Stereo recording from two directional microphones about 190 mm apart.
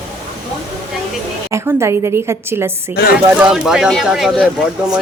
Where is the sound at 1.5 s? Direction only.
15° right (ahead or behind).